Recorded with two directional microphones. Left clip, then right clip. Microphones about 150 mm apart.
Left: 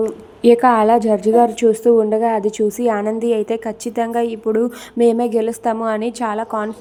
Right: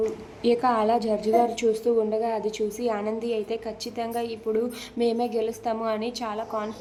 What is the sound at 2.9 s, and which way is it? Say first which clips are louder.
Speech: left 9 dB; 35° left (ahead or behind).